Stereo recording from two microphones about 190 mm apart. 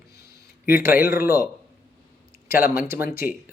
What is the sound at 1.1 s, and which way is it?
Speech, 50° left (ahead or behind).